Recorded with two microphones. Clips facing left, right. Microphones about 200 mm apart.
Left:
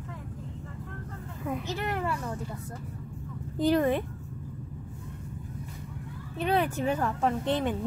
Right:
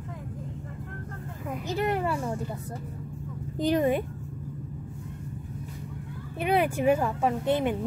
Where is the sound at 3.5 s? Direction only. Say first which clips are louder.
Even; 15° right (ahead or behind).